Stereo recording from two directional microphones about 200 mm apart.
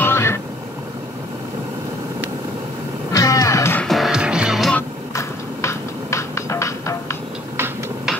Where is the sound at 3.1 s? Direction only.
15° left (ahead or behind).